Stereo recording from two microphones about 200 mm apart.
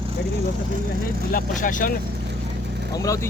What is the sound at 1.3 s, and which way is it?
Speech, 40° left (ahead or behind).